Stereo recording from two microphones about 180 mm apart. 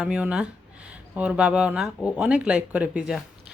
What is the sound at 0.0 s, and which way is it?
Speech, 5° right (ahead or behind).